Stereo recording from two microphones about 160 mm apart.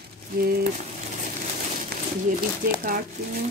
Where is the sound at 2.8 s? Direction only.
65° right (ahead or behind).